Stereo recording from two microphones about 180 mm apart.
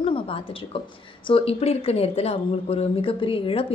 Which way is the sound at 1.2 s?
30° left (ahead or behind).